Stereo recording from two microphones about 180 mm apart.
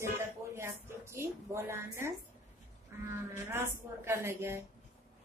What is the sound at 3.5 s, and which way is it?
A woman's voice, 15° right (ahead or behind).